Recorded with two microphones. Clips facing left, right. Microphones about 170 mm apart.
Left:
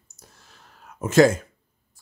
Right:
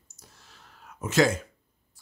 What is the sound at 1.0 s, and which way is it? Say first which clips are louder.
Speech: left 7 dB; 50° left (ahead or behind).